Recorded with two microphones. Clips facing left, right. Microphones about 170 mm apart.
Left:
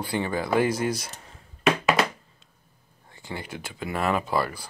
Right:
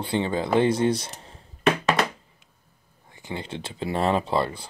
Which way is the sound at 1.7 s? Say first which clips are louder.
Even; 5° left (ahead or behind).